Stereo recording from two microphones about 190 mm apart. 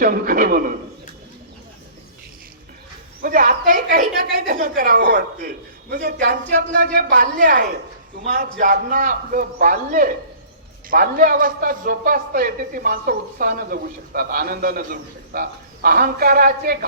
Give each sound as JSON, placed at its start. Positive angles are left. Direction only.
{"t": 0.0, "sound": "a man's voice", "side_deg": -50}
{"t": 3.2, "sound": "a man's voice", "side_deg": -50}